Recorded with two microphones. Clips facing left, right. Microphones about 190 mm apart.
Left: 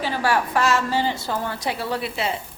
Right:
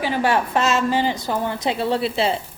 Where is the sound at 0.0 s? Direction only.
20° right (ahead or behind).